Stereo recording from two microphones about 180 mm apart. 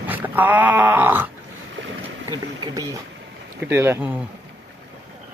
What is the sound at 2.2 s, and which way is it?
Speech, 20° right (ahead or behind).